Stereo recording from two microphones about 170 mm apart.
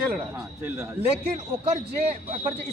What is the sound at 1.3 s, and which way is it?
A man's voice, 35° right (ahead or behind).